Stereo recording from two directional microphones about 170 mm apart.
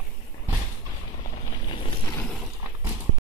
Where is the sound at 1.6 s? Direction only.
30° left (ahead or behind).